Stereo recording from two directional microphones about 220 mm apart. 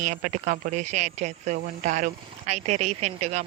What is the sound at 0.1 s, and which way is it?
Speech, 35° right (ahead or behind).